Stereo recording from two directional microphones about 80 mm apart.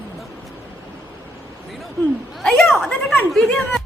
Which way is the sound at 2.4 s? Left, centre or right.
Centre.